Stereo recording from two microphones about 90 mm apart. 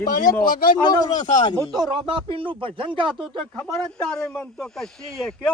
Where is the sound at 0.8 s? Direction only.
45° left (ahead or behind).